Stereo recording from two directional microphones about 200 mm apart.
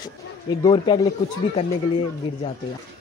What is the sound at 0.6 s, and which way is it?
Speech, 20° left (ahead or behind).